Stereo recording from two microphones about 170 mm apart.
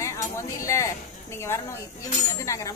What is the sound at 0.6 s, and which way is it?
Speech, 15° left (ahead or behind).